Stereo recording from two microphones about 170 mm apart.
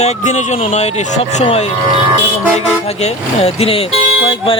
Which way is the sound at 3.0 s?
35° left (ahead or behind).